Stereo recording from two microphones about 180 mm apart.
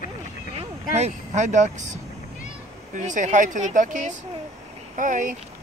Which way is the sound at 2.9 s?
45° right (ahead or behind).